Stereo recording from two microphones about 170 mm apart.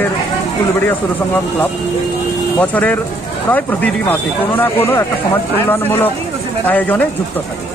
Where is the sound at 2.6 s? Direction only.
10° left (ahead or behind).